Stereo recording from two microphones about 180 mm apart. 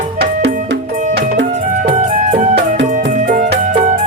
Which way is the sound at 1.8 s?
50° right (ahead or behind).